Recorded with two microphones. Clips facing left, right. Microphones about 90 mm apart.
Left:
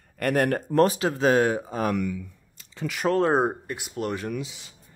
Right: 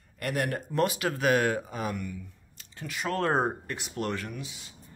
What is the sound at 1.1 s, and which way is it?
Speech, 25° left (ahead or behind).